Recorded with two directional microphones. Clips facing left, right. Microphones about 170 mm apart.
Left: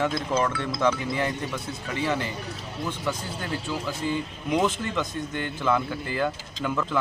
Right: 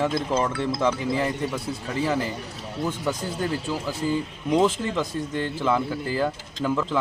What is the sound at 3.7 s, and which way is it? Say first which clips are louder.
A man's voice: right 2 dB; 40° right (ahead or behind).